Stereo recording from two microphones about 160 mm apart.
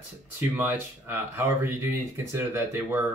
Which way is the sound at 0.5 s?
10° right (ahead or behind).